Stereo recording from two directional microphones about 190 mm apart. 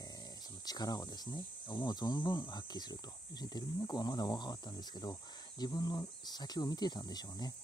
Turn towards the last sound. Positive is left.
turn(degrees=20)  # may be behind; listen again after turning